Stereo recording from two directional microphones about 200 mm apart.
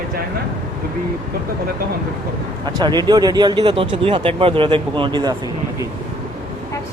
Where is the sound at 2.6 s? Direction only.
20° right (ahead or behind).